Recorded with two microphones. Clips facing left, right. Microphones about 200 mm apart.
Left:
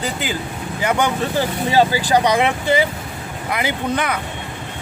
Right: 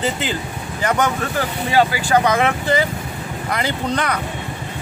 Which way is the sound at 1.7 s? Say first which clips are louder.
Left 1 dB; 35° left (ahead or behind).